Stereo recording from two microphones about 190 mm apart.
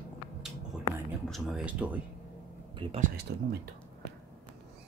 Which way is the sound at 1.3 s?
Centre (ahead or behind).